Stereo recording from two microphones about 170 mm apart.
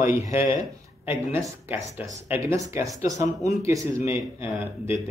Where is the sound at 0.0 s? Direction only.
15° right (ahead or behind).